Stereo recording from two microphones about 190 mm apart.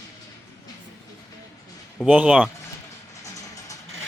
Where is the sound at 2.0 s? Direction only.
5° right (ahead or behind).